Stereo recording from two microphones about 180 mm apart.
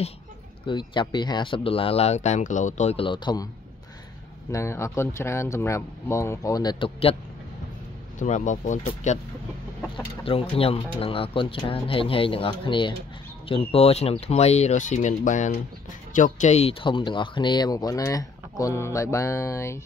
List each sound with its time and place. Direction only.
0.7 s speech: 25° left (ahead or behind)
4.5 s speech: 15° left (ahead or behind)
8.2 s speech: 45° left (ahead or behind)
9.9 s speech: 30° left (ahead or behind); by 19.8 s 15° left (ahead or behind)